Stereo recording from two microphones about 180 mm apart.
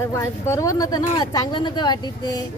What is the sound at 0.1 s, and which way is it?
Speech, 15° left (ahead or behind).